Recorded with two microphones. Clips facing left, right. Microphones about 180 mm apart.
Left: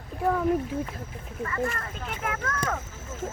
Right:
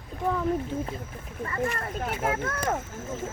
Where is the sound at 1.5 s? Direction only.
30° right (ahead or behind).